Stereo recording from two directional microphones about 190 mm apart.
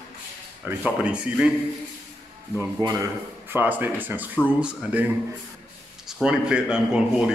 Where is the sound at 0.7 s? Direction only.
5° right (ahead or behind).